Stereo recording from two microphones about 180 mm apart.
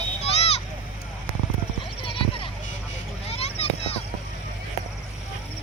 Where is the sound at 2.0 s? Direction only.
30° left (ahead or behind).